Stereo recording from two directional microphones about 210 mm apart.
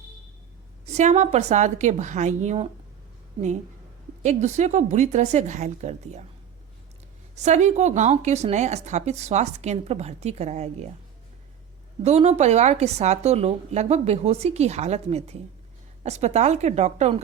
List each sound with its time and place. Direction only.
0.9 s a woman's voice: 30° right (ahead or behind)
7.3 s a woman's voice: 35° right (ahead or behind)
12.0 s a woman's voice: 30° right (ahead or behind)